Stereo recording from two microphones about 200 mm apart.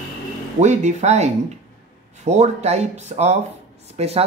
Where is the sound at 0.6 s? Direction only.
35° right (ahead or behind).